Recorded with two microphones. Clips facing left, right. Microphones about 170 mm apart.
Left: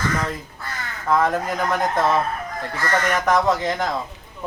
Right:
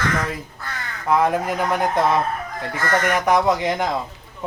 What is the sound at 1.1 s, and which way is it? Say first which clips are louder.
Speech: right 1 dB; 10° right (ahead or behind).